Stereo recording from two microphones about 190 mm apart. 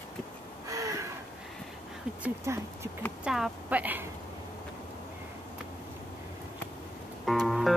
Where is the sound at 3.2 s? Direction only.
5° right (ahead or behind).